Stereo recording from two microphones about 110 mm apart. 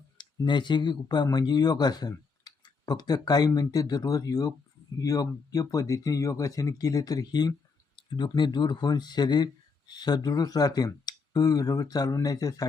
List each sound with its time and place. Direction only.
0.2 s speech: 45° left (ahead or behind)